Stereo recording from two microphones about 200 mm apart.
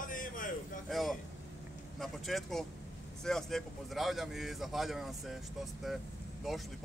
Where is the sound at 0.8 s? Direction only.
Centre (ahead or behind).